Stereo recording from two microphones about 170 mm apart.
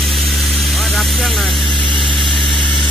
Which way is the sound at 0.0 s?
Centre (ahead or behind).